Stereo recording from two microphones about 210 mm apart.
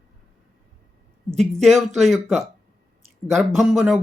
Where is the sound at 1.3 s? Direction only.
Centre (ahead or behind).